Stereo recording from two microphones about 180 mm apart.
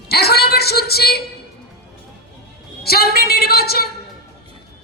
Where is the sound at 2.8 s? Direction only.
60° left (ahead or behind).